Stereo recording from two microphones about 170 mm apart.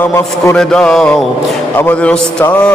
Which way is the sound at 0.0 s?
15° left (ahead or behind).